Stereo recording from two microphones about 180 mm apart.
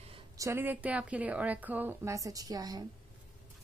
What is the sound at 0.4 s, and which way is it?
A woman's voice, 15° right (ahead or behind).